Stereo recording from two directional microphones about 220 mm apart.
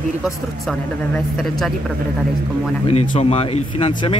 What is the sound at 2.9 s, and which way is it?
Speech, 30° left (ahead or behind).